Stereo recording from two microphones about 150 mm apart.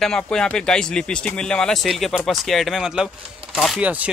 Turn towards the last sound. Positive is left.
turn(degrees=0)  # may be behind; listen again after turning